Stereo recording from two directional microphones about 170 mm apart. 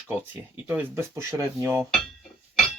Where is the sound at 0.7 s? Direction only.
15° right (ahead or behind).